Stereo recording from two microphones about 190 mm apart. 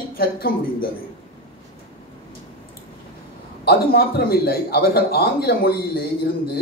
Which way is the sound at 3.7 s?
55° left (ahead or behind).